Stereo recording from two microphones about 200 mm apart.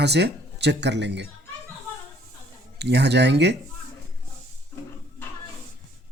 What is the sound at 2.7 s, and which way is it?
Speech, 55° right (ahead or behind).